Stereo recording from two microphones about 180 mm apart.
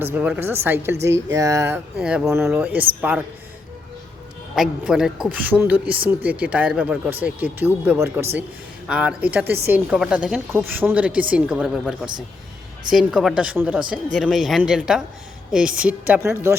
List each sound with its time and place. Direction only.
0.0 s a woman's voice: 10° right (ahead or behind)
4.5 s a woman's voice: 5° right (ahead or behind)